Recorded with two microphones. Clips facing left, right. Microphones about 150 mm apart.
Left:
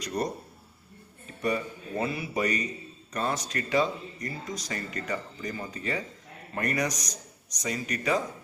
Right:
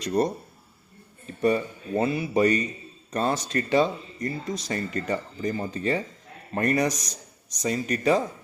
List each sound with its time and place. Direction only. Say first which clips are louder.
0.0 s speech: right 7 dB; 30° right (ahead or behind)
1.4 s speech: right 6 dB; 30° right (ahead or behind)